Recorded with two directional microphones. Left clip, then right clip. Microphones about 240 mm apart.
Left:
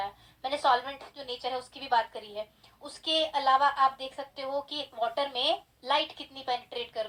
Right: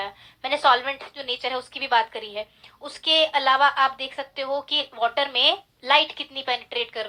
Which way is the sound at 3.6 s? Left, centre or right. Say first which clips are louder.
Right 6 dB; right.